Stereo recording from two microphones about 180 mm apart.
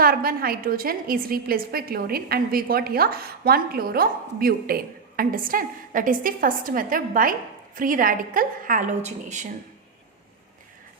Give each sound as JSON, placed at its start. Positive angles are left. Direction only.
{"t": 0.0, "sound": "a woman's voice", "side_deg": -55}